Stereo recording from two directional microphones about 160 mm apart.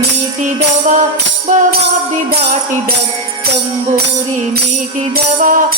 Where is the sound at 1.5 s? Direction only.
50° right (ahead or behind).